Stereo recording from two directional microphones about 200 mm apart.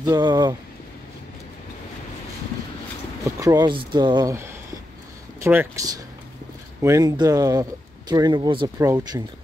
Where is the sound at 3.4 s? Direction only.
20° right (ahead or behind).